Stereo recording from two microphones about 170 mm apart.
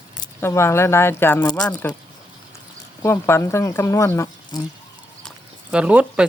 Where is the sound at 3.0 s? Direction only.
15° left (ahead or behind).